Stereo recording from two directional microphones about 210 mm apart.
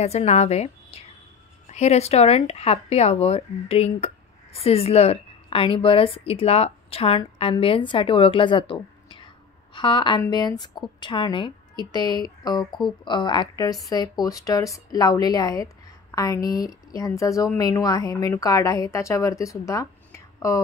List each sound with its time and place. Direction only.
0.0 s a woman's voice: 30° left (ahead or behind); by 20.6 s 15° left (ahead or behind)